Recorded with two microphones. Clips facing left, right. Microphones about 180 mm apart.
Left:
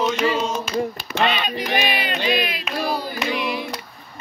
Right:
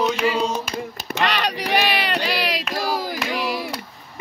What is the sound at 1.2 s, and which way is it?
Child singing, 75° right (ahead or behind).